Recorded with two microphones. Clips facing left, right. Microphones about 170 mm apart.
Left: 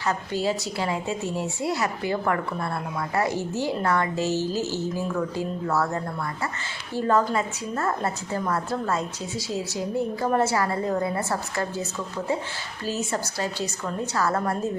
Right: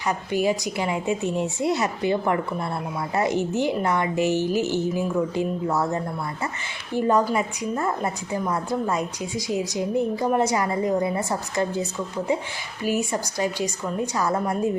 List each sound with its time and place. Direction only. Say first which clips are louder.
0.1 s a woman's voice: right 3 dB; 15° right (ahead or behind)